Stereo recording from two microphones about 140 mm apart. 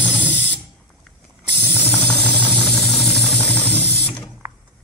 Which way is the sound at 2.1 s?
10° left (ahead or behind).